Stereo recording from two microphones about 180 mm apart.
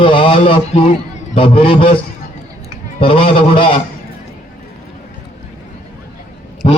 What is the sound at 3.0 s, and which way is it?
Speech, 30° left (ahead or behind).